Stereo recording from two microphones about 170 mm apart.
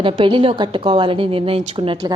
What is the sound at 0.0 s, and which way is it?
A woman's voice, 30° right (ahead or behind).